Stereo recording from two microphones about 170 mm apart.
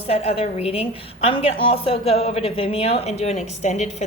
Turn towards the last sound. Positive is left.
turn(degrees=45)  # may be behind; listen again after turning